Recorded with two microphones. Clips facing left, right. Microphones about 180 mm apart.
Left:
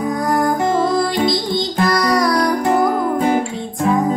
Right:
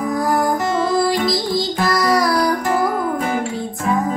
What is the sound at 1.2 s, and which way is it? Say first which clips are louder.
Music: left 1 dB; centre (ahead or behind).